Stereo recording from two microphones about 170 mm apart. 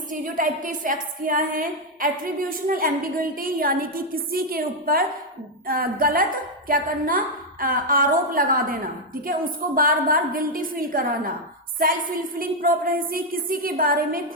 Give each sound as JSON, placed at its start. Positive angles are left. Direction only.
{"t": 0.1, "sound": "a woman's voice", "side_deg": -50}
{"t": 12.4, "sound": "a woman's voice", "side_deg": -55}